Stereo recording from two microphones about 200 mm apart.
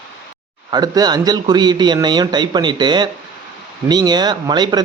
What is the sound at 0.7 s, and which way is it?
A man's voice, 20° right (ahead or behind).